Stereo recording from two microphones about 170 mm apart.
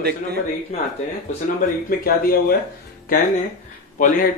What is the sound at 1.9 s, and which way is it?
Speech, 60° left (ahead or behind).